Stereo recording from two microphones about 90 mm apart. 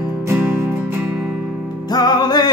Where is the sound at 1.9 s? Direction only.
50° left (ahead or behind).